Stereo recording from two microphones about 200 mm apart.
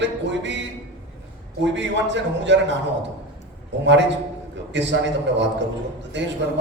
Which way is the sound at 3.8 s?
60° right (ahead or behind).